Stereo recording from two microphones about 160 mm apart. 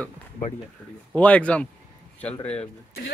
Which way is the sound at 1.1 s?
10° left (ahead or behind).